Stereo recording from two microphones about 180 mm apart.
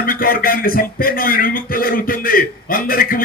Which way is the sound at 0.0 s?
55° left (ahead or behind).